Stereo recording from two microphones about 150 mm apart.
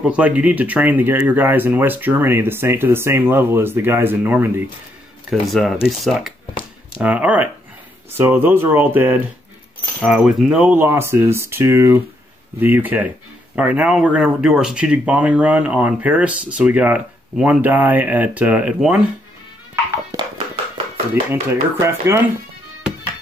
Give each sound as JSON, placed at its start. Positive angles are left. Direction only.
{"t": 0.0, "sound": "speech", "side_deg": -10}
{"t": 5.3, "sound": "speech", "side_deg": 0}
{"t": 21.1, "sound": "speech", "side_deg": -15}